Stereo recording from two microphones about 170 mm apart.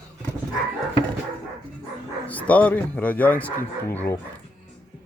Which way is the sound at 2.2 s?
10° left (ahead or behind).